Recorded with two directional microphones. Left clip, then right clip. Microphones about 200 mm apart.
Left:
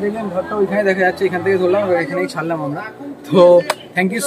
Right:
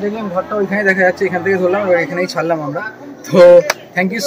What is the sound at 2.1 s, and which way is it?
A man's voice, 40° right (ahead or behind).